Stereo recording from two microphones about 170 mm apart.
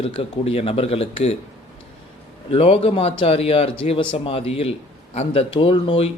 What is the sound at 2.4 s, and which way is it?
A man's voice, 35° left (ahead or behind).